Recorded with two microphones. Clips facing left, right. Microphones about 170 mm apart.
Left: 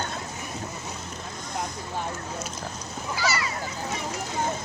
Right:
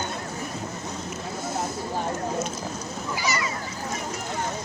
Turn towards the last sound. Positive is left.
turn(degrees=-20)  # may be behind; listen again after turning